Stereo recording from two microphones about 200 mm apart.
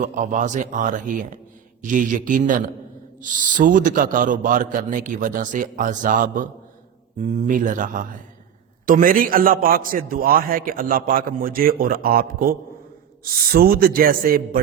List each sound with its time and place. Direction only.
0.0 s a man's voice: 40° right (ahead or behind)